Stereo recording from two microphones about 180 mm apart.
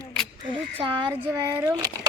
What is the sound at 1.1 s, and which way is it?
Speech, 15° right (ahead or behind).